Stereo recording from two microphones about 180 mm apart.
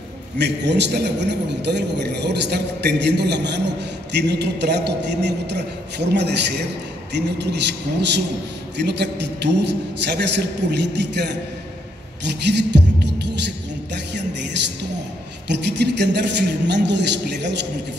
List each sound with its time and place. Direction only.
0.4 s a man's voice: 70° right (ahead or behind)
12.3 s music: 70° right (ahead or behind)
15.4 s a man's voice: 70° right (ahead or behind)